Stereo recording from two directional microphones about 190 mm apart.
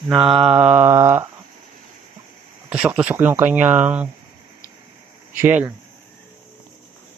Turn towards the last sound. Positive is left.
turn(degrees=-10)  # may be behind; listen again after turning